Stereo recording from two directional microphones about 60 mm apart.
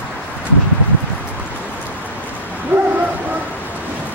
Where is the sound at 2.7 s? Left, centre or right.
Right.